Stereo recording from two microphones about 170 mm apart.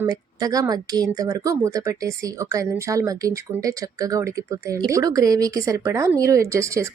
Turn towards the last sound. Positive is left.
turn(degrees=-15)  # may be behind; listen again after turning